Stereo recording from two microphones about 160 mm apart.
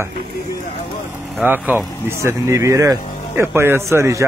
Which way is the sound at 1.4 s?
10° right (ahead or behind).